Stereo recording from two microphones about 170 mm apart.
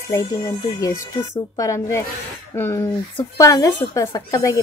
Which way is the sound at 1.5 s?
20° left (ahead or behind).